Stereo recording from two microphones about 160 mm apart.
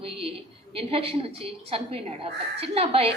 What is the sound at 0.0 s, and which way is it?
A woman's voice, 35° right (ahead or behind).